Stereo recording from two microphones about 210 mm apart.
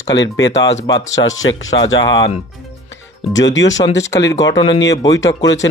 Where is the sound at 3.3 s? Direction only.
60° left (ahead or behind).